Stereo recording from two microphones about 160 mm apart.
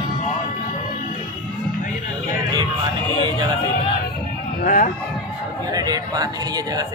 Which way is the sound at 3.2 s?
25° right (ahead or behind).